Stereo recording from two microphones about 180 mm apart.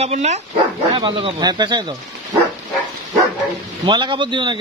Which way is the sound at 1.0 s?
25° right (ahead or behind).